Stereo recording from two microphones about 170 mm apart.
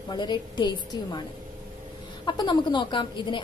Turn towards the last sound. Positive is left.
turn(degrees=30)  # may be behind; listen again after turning